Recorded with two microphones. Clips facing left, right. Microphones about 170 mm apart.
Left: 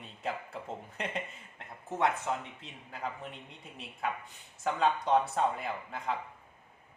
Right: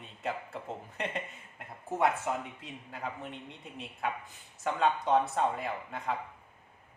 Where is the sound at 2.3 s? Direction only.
10° right (ahead or behind).